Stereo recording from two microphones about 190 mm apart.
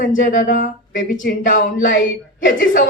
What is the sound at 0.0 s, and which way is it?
Speech, 45° left (ahead or behind).